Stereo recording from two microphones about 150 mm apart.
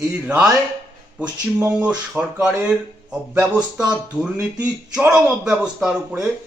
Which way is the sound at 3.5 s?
25° right (ahead or behind).